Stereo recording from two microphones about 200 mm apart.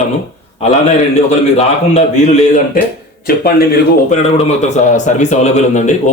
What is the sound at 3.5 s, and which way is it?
Speech, 50° left (ahead or behind).